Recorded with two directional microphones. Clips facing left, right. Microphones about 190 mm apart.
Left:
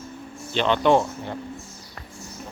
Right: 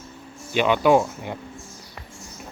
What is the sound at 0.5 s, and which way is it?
Speech, 10° right (ahead or behind).